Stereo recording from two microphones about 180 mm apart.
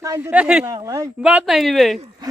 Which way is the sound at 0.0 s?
15° right (ahead or behind).